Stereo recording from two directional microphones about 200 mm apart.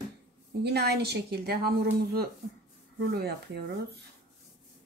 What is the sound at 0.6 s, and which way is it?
Speech, 55° right (ahead or behind).